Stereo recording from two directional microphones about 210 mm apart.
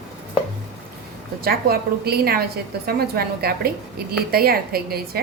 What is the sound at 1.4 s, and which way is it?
A woman's voice, 45° right (ahead or behind).